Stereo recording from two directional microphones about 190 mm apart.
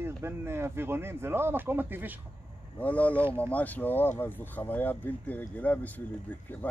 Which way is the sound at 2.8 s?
10° left (ahead or behind).